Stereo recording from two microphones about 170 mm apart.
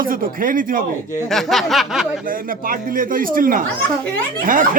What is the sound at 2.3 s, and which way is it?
Speech, 55° right (ahead or behind).